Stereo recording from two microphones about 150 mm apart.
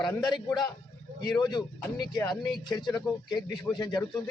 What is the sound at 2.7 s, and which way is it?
A man's voice, 30° left (ahead or behind).